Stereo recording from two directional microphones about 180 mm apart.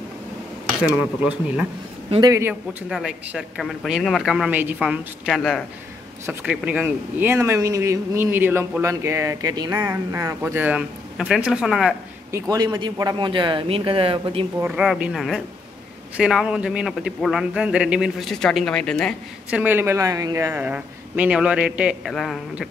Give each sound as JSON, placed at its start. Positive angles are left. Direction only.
{"t": 2.0, "sound": "speech", "side_deg": -25}
{"t": 2.9, "sound": "speech", "side_deg": -5}
{"t": 12.3, "sound": "speech", "side_deg": -20}
{"t": 14.6, "sound": "speech", "side_deg": -5}
{"t": 19.5, "sound": "speech", "side_deg": -10}